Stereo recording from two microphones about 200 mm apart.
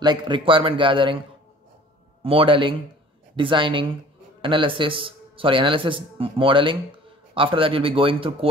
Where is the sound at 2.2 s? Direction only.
25° right (ahead or behind).